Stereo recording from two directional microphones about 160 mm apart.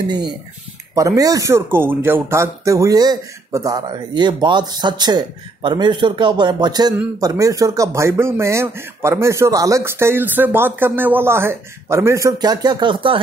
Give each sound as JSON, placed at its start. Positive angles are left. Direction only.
{"t": 0.9, "sound": "speech", "side_deg": -20}